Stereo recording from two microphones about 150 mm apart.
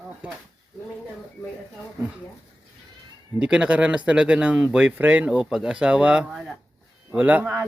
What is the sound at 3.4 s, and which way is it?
Speech, 5° right (ahead or behind).